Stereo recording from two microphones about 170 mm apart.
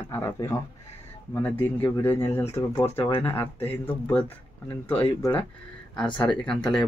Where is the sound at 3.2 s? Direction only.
15° left (ahead or behind).